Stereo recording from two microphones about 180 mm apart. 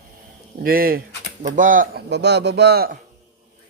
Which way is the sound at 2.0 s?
70° right (ahead or behind).